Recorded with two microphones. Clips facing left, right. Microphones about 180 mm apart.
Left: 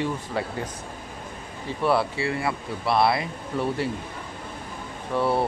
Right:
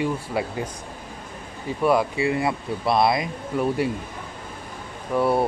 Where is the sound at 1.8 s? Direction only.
15° right (ahead or behind).